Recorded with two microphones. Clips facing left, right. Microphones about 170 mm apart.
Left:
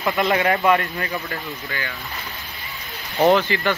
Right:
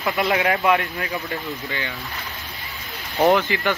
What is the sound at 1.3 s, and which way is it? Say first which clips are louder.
Speech: right 2 dB; 20° right (ahead or behind).